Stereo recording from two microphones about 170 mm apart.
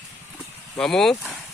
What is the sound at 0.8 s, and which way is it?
Speech, 5° left (ahead or behind).